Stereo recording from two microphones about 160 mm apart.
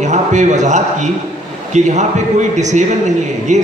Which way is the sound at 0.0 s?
45° right (ahead or behind).